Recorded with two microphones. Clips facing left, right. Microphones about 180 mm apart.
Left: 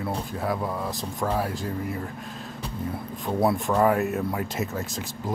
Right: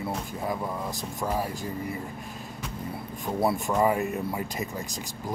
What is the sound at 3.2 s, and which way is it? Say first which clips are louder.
Speech: left 3 dB; centre (ahead or behind).